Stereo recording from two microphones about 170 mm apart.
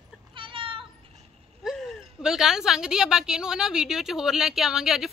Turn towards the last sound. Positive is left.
turn(degrees=-5)  # may be behind; listen again after turning